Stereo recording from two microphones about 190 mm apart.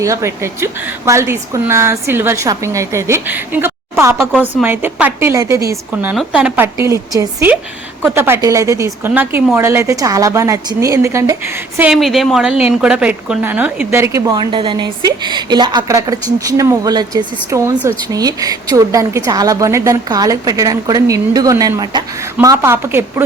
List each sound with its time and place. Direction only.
0.0 s a woman's voice: 15° right (ahead or behind)